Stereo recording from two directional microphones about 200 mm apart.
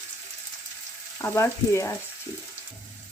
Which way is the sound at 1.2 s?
15° left (ahead or behind).